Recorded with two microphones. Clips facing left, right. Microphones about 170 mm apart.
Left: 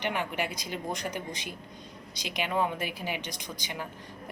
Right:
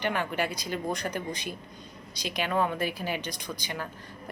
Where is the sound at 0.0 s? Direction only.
15° left (ahead or behind).